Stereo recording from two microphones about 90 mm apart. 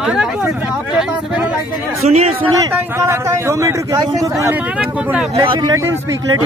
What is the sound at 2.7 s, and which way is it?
A man's voice, 30° right (ahead or behind).